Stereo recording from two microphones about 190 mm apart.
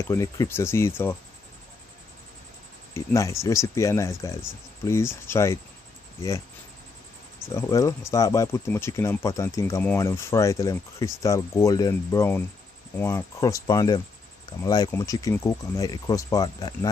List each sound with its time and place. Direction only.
0.0 s speech: 15° left (ahead or behind)
2.9 s speech: 15° left (ahead or behind)
7.4 s speech: 15° left (ahead or behind)